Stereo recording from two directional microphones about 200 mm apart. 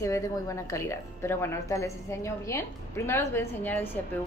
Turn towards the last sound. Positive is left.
turn(degrees=10)  # may be behind; listen again after turning